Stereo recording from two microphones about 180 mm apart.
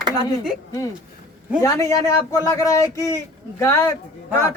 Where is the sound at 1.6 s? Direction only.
20° left (ahead or behind).